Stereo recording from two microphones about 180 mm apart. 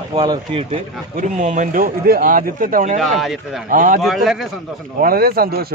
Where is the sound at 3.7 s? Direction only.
45° right (ahead or behind).